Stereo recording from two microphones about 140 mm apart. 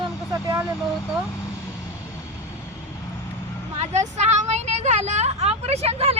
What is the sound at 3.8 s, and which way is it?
A woman's voice, 55° right (ahead or behind).